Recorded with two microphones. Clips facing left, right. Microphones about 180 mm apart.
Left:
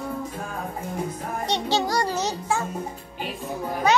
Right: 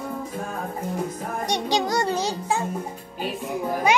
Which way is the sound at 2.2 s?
15° right (ahead or behind).